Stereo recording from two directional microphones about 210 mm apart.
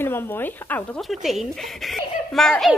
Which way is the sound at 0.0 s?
10° left (ahead or behind).